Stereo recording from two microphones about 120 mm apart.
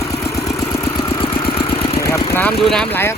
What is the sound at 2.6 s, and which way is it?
Speech, 5° left (ahead or behind).